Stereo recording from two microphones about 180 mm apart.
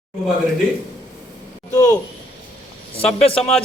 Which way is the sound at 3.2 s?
30° left (ahead or behind).